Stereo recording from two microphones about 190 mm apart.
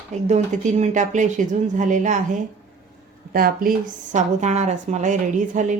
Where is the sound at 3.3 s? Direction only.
50° right (ahead or behind).